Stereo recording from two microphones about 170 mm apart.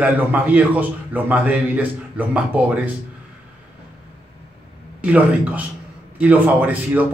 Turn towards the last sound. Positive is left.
turn(degrees=-10)  # may be behind; listen again after turning